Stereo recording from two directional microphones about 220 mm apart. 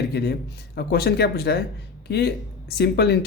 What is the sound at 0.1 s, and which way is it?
Speech, 50° left (ahead or behind).